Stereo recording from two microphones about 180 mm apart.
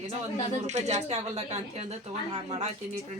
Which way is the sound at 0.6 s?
40° right (ahead or behind).